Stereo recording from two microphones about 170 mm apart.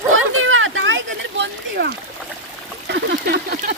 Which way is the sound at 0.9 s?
90° right.